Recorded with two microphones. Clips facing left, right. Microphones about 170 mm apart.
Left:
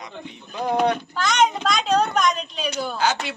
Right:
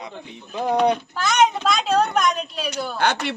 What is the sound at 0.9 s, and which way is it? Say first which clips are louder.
Speech: right 1 dB; 5° right (ahead or behind).